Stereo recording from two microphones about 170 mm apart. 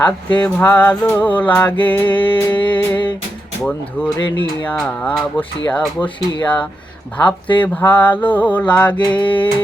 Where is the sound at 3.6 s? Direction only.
5° left (ahead or behind).